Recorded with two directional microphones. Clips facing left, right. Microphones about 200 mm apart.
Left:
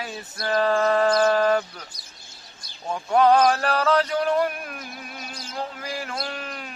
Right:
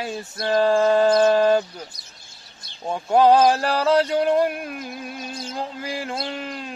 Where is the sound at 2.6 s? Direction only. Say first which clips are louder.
Right 3 dB; 25° right (ahead or behind).